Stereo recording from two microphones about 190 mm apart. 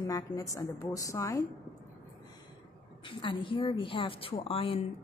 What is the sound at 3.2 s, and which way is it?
A woman's voice, 25° left (ahead or behind).